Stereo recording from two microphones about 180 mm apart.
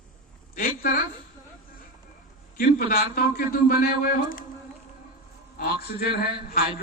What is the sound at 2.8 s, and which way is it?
A man's voice, 50° left (ahead or behind).